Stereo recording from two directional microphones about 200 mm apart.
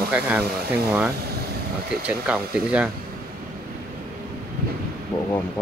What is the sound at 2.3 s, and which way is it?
Speech, 5° right (ahead or behind).